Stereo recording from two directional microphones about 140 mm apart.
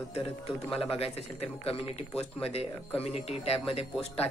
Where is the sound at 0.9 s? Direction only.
45° left (ahead or behind).